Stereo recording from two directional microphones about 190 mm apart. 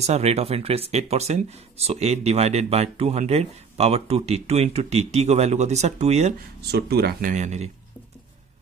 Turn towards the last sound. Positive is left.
turn(degrees=-35)  # may be behind; listen again after turning